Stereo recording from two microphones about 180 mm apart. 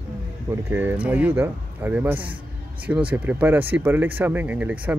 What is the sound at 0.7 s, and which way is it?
Speech, 10° right (ahead or behind).